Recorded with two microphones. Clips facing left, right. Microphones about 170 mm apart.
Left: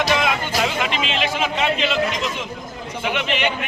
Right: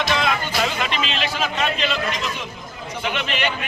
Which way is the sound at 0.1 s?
15° left (ahead or behind).